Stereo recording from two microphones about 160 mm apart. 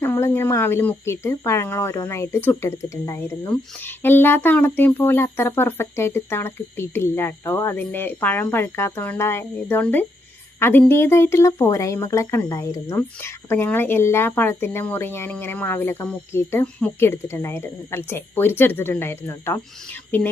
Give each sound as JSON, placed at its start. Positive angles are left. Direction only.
{"t": 0.0, "sound": "speech", "side_deg": 15}